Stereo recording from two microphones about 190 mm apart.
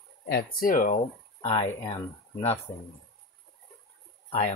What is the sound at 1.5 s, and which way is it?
Speech, 25° left (ahead or behind).